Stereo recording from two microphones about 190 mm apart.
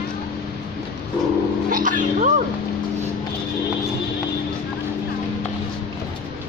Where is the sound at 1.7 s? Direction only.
45° right (ahead or behind).